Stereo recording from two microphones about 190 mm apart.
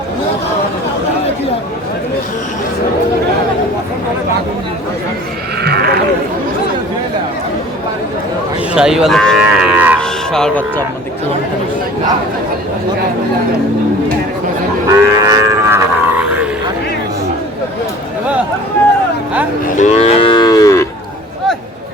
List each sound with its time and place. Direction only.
5.6 s speech: 55° right (ahead or behind)
8.7 s livestock: 5° right (ahead or behind)
10.0 s speech: 5° left (ahead or behind)
14.8 s livestock: 15° right (ahead or behind)
19.7 s moo: 35° left (ahead or behind); by 20.8 s 15° left (ahead or behind)